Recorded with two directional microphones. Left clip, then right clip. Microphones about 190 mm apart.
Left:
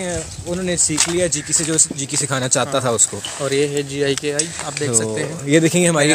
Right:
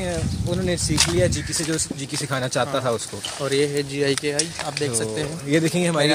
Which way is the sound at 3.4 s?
15° left (ahead or behind).